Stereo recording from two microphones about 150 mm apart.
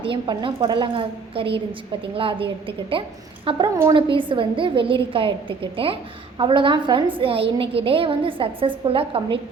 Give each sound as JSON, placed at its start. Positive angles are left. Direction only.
{"t": 0.0, "sound": "a woman's voice", "side_deg": -35}